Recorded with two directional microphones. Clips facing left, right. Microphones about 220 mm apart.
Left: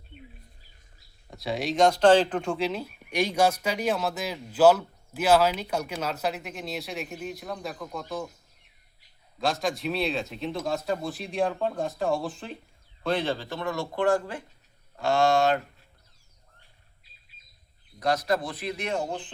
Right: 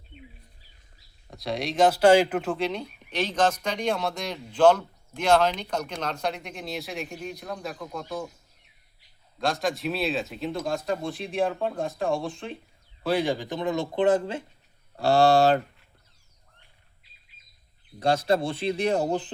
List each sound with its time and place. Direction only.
1.3 s speech: centre (ahead or behind)
9.4 s speech: centre (ahead or behind); by 14.4 s 20° right (ahead or behind)
14.9 s speech: 35° right (ahead or behind)
18.0 s a man's voice: 30° right (ahead or behind)